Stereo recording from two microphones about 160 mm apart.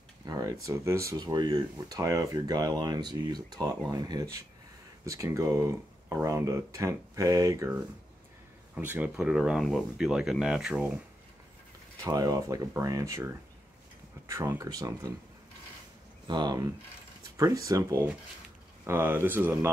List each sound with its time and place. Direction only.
0.3 s speech: 20° right (ahead or behind)
8.7 s speech: 10° right (ahead or behind)
12.0 s speech: 25° right (ahead or behind)
14.2 s speech: 20° right (ahead or behind)
16.3 s speech: 25° right (ahead or behind)